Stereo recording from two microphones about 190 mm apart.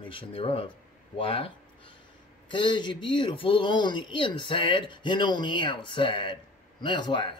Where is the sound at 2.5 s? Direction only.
25° left (ahead or behind).